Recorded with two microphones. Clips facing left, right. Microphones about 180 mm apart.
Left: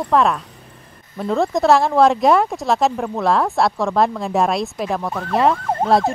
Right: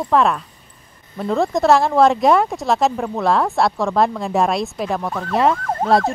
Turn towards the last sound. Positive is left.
turn(degrees=0)  # may be behind; listen again after turning